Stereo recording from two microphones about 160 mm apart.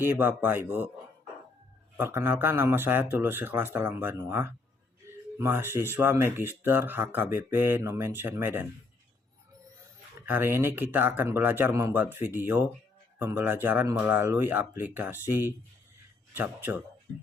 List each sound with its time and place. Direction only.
0.0 s speech: 15° right (ahead or behind)
2.0 s speech: 15° right (ahead or behind)
5.0 s a sound: 20° right (ahead or behind)
5.4 s speech: 15° right (ahead or behind)
10.2 s speech: 10° right (ahead or behind)